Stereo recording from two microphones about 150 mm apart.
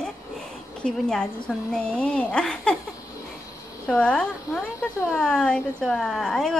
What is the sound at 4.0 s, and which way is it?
A woman's voice, 5° left (ahead or behind).